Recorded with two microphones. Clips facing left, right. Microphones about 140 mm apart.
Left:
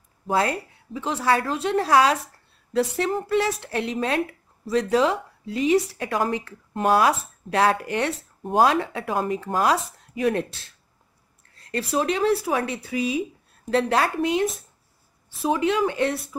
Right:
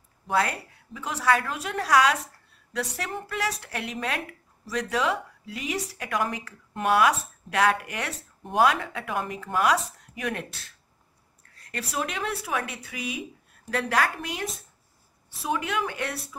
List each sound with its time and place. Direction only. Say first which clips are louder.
0.3 s a woman's voice: left 3 dB; 30° left (ahead or behind)
15.4 s a woman's voice: left 7 dB; 25° left (ahead or behind)